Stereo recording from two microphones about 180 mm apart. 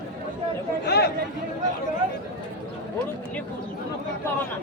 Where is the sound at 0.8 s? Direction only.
65° left (ahead or behind).